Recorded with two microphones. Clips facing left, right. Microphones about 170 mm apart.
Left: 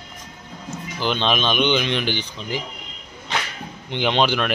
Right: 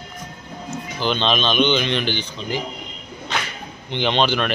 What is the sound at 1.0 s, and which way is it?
Speech, 5° left (ahead or behind).